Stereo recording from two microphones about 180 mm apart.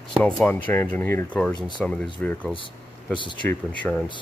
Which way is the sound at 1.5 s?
25° left (ahead or behind).